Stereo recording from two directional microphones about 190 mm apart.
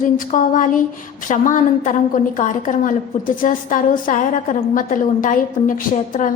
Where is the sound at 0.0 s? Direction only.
45° left (ahead or behind).